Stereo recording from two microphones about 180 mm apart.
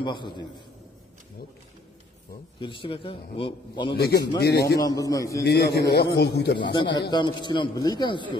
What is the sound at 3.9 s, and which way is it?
Speech, 65° left (ahead or behind).